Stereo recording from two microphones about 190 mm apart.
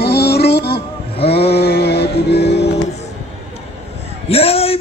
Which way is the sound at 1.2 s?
30° left (ahead or behind).